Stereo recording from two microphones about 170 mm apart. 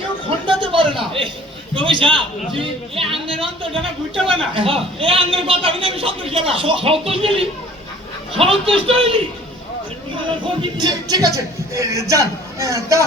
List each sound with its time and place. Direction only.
0.3 s a sound: 30° right (ahead or behind)
1.7 s a man's voice: 30° right (ahead or behind)
10.4 s a man's voice: 25° right (ahead or behind)